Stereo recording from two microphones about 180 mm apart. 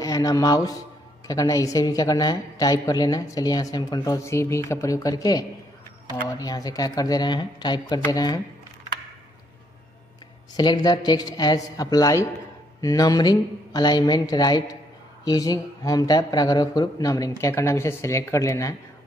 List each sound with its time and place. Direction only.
0.0 s a woman's voice: 20° left (ahead or behind)
10.5 s a woman's voice: 25° left (ahead or behind)